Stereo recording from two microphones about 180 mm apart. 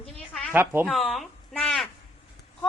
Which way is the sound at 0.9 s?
Centre (ahead or behind).